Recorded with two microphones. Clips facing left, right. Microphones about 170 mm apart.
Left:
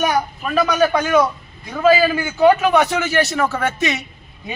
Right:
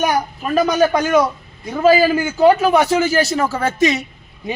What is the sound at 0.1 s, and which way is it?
A man's voice, 35° right (ahead or behind).